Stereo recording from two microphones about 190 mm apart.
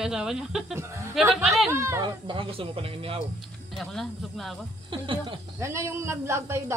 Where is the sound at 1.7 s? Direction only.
15° right (ahead or behind).